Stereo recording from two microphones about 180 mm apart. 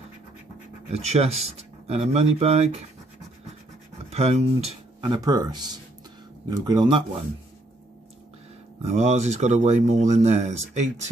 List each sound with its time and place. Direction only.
0.8 s speech: 35° right (ahead or behind)
4.1 s speech: 35° right (ahead or behind)
5.0 s speech: 20° right (ahead or behind)
8.8 s speech: 40° right (ahead or behind)